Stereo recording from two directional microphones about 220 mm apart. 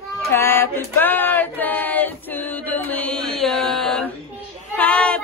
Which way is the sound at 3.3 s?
Centre (ahead or behind).